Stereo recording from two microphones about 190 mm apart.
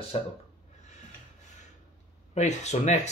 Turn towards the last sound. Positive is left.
turn(degrees=35)  # may be behind; listen again after turning